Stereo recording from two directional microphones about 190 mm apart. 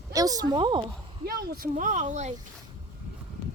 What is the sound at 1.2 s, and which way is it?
Speech, 55° right (ahead or behind).